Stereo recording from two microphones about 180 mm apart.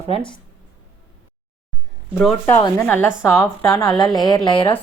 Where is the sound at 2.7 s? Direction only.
10° left (ahead or behind); by 4.7 s 25° left (ahead or behind).